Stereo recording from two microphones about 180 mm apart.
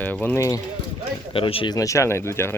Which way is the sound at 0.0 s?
10° left (ahead or behind).